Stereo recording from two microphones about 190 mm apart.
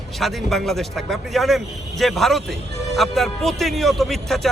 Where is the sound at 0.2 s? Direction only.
Centre (ahead or behind).